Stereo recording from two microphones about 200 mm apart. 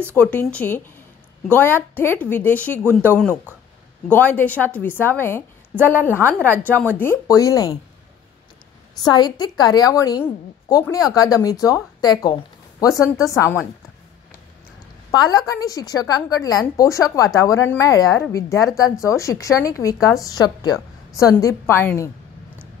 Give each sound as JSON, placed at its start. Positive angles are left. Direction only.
{"t": 0.1, "sound": "a woman's voice", "side_deg": 10}
{"t": 9.0, "sound": "a woman's voice", "side_deg": 20}
{"t": 15.0, "sound": "a woman's voice", "side_deg": 20}